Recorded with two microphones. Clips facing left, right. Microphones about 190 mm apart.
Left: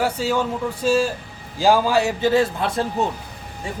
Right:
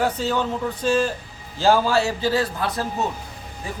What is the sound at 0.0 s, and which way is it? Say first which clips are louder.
A man's voice: left 1 dB; 10° left (ahead or behind).